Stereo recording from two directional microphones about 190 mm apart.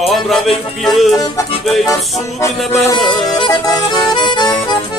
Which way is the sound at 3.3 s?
20° left (ahead or behind).